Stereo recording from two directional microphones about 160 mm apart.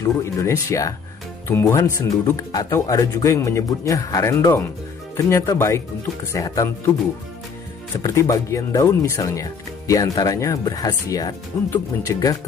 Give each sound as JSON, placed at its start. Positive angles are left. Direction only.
{"t": 0.0, "sound": "speech", "side_deg": 20}
{"t": 8.0, "sound": "speech", "side_deg": 20}